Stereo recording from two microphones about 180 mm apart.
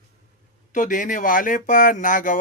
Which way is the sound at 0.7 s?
45° left (ahead or behind).